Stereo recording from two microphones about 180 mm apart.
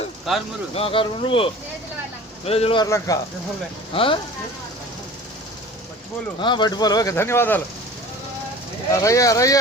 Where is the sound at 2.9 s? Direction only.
20° left (ahead or behind).